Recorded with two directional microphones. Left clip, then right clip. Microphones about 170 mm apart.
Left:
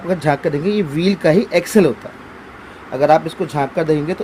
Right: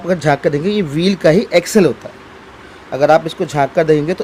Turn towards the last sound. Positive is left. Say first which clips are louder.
# right 5 dB
turn(degrees=-55)  # may be behind; listen again after turning